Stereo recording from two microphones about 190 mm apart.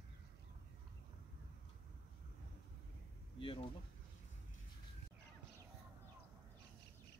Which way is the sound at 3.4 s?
25° left (ahead or behind).